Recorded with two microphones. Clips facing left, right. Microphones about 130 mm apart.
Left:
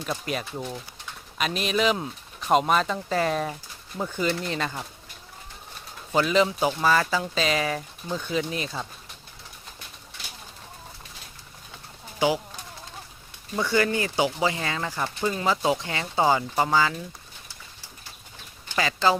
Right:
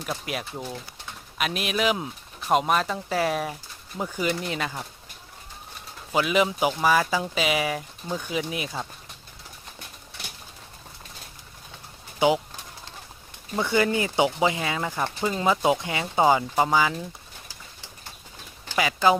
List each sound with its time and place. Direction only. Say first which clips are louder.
0.0 s speech: left 1 dB; 5° right (ahead or behind)
6.1 s speech: left 1 dB; 10° right (ahead or behind)
13.6 s speech: right 1 dB; 15° right (ahead or behind)
18.8 s speech: right 2 dB; 15° right (ahead or behind)